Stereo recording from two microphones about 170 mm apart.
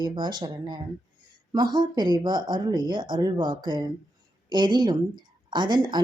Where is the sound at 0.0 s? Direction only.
25° right (ahead or behind).